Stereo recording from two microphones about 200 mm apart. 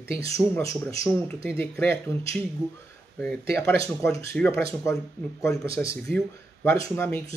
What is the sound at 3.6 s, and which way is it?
Speech, 15° left (ahead or behind).